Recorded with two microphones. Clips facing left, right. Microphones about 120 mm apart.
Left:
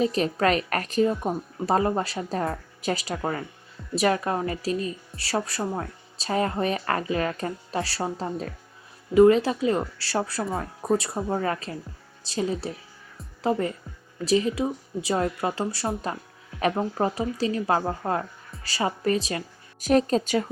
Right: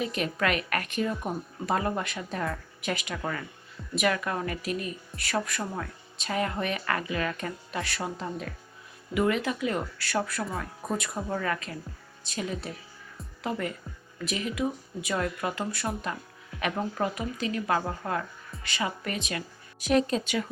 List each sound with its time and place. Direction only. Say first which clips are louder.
0.0 s a woman's voice: left 6 dB; 35° left (ahead or behind)